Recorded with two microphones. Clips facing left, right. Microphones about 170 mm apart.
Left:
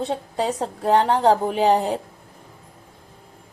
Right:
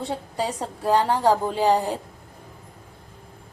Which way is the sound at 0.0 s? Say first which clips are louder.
Left 3 dB; 20° left (ahead or behind).